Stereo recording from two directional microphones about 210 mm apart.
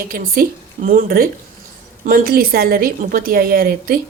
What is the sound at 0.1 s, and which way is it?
A woman's voice, 45° right (ahead or behind).